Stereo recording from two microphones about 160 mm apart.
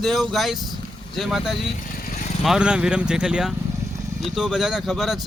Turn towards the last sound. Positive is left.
turn(degrees=0)  # may be behind; listen again after turning